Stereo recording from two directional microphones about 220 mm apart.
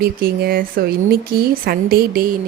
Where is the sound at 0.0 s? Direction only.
45° right (ahead or behind).